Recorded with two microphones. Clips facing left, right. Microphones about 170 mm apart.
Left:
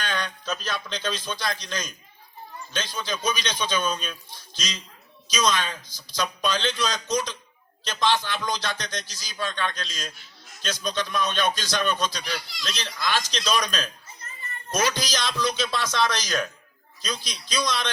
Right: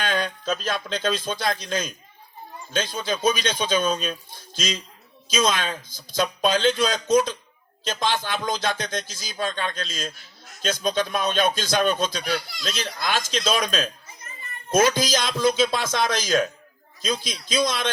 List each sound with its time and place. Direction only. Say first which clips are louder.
0.0 s speech: right 5 dB; 50° right (ahead or behind)